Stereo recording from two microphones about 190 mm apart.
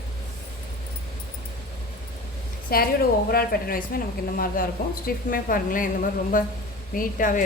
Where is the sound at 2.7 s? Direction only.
50° left (ahead or behind).